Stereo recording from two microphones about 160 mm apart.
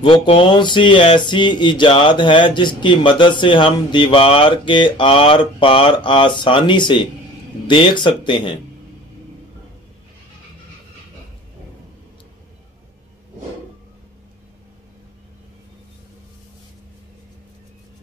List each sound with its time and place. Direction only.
0.0 s speech: 30° left (ahead or behind)